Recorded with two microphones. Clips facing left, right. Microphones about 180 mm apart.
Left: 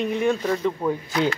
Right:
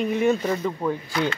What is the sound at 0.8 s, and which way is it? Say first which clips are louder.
Speech: left 2 dB; 10° left (ahead or behind).